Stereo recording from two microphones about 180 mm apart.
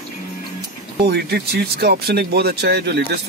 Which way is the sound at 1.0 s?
65° right (ahead or behind).